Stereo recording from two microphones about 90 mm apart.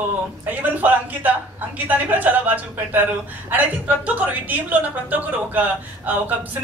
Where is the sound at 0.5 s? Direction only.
20° right (ahead or behind).